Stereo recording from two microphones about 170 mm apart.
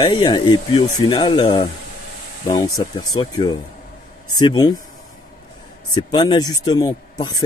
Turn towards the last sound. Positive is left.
turn(degrees=20)  # may be behind; listen again after turning